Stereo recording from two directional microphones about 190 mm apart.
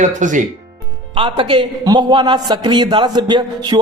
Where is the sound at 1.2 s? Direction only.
25° right (ahead or behind).